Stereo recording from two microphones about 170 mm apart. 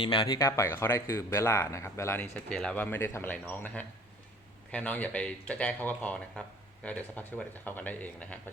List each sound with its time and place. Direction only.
0.0 s speech: 25° left (ahead or behind); by 8.4 s 10° left (ahead or behind)